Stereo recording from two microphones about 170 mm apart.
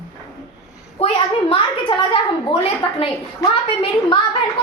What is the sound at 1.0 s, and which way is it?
A woman's voice, 30° left (ahead or behind).